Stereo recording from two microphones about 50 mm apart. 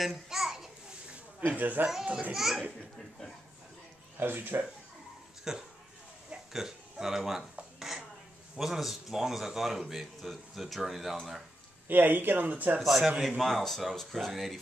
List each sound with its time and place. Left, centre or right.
0.0 s a sound: centre
1.4 s speech: right
2.3 s speech: centre
4.2 s speech: right
5.5 s speech: centre
11.9 s speech: right
12.8 s speech: centre